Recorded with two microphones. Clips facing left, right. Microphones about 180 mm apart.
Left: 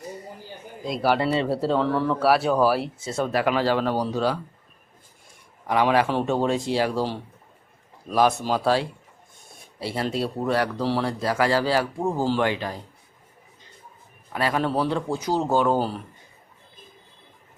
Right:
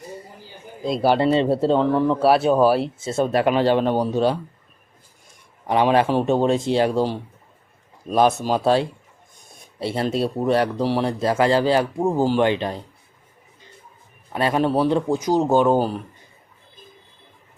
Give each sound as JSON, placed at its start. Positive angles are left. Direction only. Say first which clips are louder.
{"t": 0.9, "sound": "speech", "louder": "right 4 dB", "side_deg": -25}
{"t": 5.6, "sound": "speech", "louder": "right 3 dB", "side_deg": -25}
{"t": 14.3, "sound": "speech", "louder": "right 4 dB", "side_deg": -25}